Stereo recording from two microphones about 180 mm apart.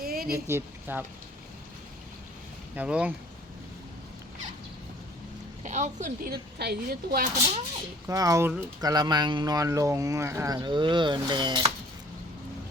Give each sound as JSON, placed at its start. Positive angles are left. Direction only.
{"t": 0.0, "sound": "a sound", "side_deg": -55}
{"t": 0.3, "sound": "a woman's voice", "side_deg": -15}
{"t": 2.7, "sound": "a woman's voice", "side_deg": -5}
{"t": 5.6, "sound": "a woman's voice", "side_deg": -40}
{"t": 6.3, "sound": "speech", "side_deg": -60}
{"t": 8.0, "sound": "a woman's voice", "side_deg": -20}